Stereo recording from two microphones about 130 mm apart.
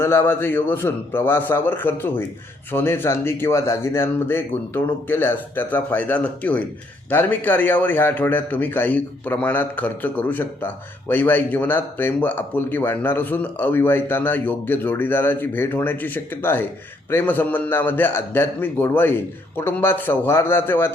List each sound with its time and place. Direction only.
0.0 s a man's voice: 15° left (ahead or behind)